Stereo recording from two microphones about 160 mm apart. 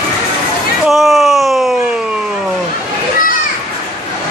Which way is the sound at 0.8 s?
Centre (ahead or behind).